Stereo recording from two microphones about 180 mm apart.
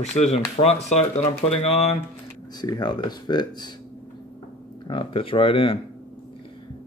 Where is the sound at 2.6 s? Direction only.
20° left (ahead or behind).